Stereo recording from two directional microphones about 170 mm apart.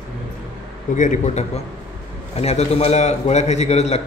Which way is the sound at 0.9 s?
45° left (ahead or behind).